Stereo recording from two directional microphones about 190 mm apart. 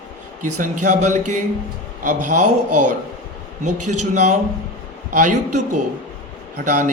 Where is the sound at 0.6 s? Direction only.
40° right (ahead or behind).